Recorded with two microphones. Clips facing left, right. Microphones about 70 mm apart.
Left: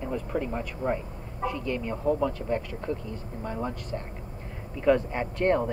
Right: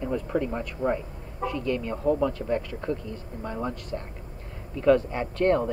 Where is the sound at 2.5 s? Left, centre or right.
Left.